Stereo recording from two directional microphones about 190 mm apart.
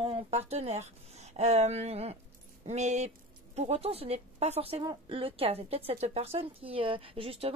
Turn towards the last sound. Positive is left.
turn(degrees=-30)  # may be behind; listen again after turning